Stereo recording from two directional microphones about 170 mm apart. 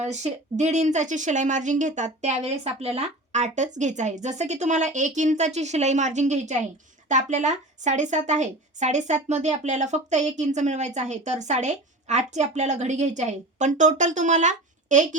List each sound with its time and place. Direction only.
0.0 s a woman's voice: 40° right (ahead or behind)